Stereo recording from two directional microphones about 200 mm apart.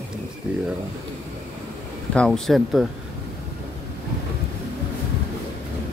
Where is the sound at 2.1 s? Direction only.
5° left (ahead or behind).